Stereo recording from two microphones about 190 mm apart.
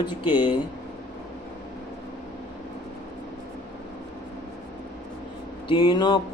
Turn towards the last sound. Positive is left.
turn(degrees=25)  # may be behind; listen again after turning